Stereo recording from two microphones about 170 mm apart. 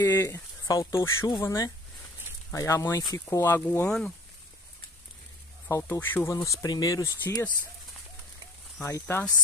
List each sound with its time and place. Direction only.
0.0 s speech: 15° left (ahead or behind)
5.7 s speech: 15° left (ahead or behind)
8.8 s speech: 15° left (ahead or behind)